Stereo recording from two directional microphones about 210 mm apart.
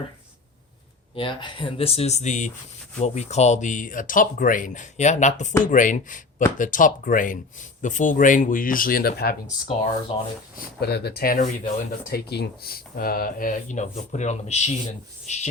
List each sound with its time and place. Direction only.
1.1 s speech: 25° left (ahead or behind); by 9.3 s 45° left (ahead or behind)
10.1 s speech: 30° left (ahead or behind)
10.8 s speech: 50° left (ahead or behind); by 15.4 s 35° left (ahead or behind)